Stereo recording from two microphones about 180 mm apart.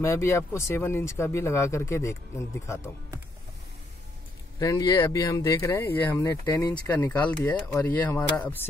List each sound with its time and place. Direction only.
0.0 s speech: 15° left (ahead or behind)
4.6 s speech: 20° left (ahead or behind)